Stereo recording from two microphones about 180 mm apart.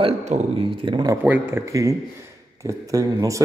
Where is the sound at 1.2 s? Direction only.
10° right (ahead or behind).